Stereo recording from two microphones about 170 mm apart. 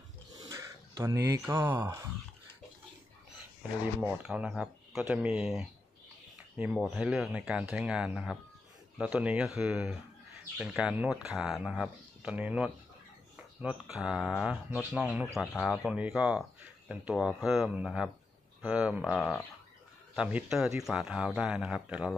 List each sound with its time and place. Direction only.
0.4 s a sound: 20° right (ahead or behind)
1.5 s speech: 15° right (ahead or behind)
4.0 s speech: 5° right (ahead or behind)